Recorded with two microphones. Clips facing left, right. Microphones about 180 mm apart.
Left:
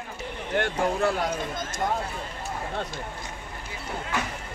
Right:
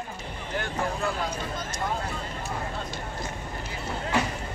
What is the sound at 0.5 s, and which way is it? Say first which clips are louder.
Speech: left 5 dB; 75° left (ahead or behind).